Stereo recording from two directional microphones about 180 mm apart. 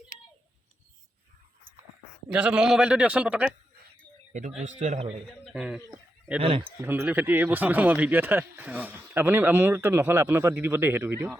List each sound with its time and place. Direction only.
2.3 s speech: 5° right (ahead or behind)
4.3 s a man's voice: 45° right (ahead or behind)
5.5 s speech: 5° right (ahead or behind)
6.8 s speech: 10° right (ahead or behind)